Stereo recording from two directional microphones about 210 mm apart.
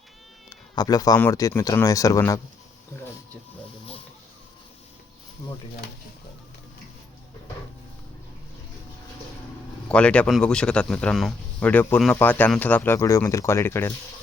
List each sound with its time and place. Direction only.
0.5 s speech: 15° left (ahead or behind)
9.9 s speech: 5° left (ahead or behind)